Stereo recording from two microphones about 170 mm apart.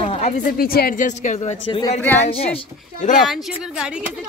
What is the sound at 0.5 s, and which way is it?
Speech, 60° left (ahead or behind).